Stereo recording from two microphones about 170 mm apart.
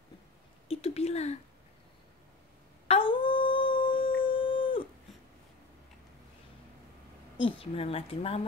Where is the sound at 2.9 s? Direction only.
30° left (ahead or behind).